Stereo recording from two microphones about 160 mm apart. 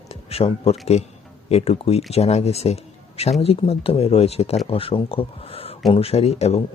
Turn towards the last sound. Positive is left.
turn(degrees=40)  # may be behind; listen again after turning